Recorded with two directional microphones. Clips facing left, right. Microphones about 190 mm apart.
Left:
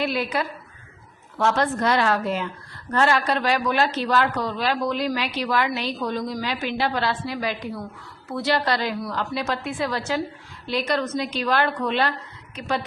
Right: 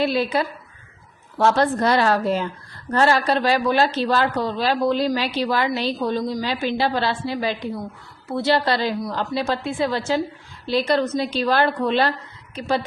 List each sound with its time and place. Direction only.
0.0 s a woman's voice: 30° right (ahead or behind)